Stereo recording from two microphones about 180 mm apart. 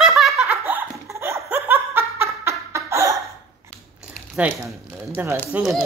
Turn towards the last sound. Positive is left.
turn(degrees=-5)  # may be behind; listen again after turning